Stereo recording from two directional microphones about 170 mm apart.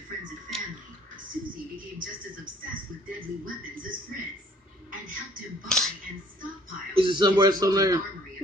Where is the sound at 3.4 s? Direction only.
55° right (ahead or behind).